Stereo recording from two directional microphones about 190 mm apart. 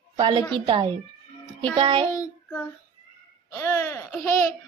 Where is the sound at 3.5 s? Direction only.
15° left (ahead or behind).